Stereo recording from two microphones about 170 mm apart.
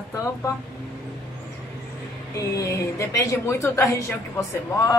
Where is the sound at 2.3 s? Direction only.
20° left (ahead or behind).